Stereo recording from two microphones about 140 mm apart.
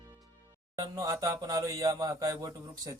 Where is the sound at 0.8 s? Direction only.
25° right (ahead or behind).